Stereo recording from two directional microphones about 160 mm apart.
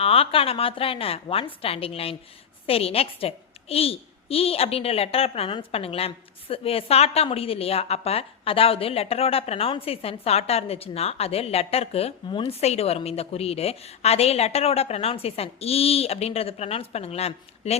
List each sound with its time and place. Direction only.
0.0 s a child's voice: 35° left (ahead or behind)